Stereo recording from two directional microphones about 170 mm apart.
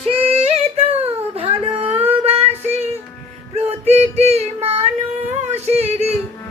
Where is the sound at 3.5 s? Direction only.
40° right (ahead or behind).